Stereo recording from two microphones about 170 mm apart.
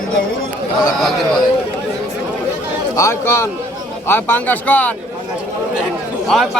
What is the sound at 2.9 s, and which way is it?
Speech, 15° left (ahead or behind).